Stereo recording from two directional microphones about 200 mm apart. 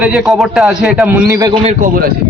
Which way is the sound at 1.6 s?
35° right (ahead or behind).